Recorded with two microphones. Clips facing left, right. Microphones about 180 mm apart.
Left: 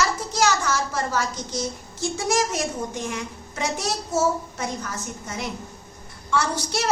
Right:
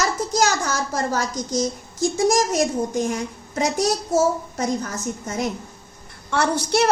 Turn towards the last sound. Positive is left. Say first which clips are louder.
# right 5 dB
turn(degrees=-60)  # may be behind; listen again after turning